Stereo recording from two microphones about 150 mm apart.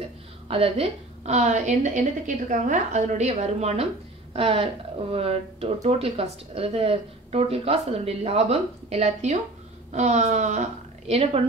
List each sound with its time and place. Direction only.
0.5 s speech: 40° right (ahead or behind)
11.1 s speech: 40° right (ahead or behind)